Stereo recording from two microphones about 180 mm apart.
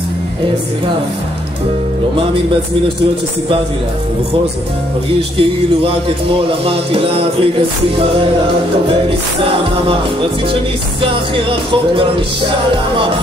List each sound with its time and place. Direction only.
5.4 s music: 30° right (ahead or behind)
10.5 s music: 30° right (ahead or behind)